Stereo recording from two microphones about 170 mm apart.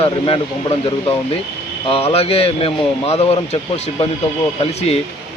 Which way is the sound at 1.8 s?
35° left (ahead or behind).